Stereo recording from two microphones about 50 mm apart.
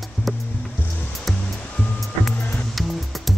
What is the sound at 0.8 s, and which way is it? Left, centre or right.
Music, left.